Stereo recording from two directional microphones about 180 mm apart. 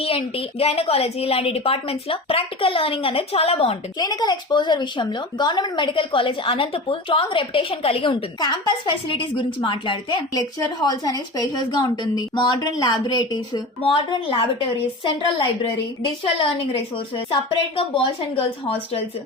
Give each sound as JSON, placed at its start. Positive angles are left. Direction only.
{"t": 0.0, "sound": "a woman's voice", "side_deg": 30}
{"t": 17.7, "sound": "a woman's voice", "side_deg": 30}